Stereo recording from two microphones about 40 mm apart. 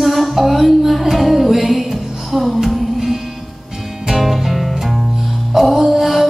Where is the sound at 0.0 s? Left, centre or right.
Centre.